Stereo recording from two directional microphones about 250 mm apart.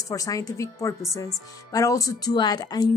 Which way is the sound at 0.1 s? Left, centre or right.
Centre.